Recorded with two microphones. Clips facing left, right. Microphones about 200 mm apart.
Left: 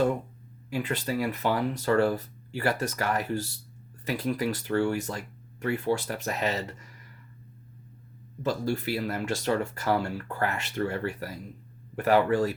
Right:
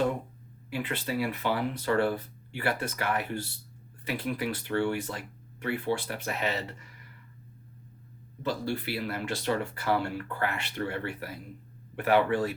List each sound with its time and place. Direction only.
0.7 s speech: 45° left (ahead or behind)
8.4 s speech: 45° left (ahead or behind)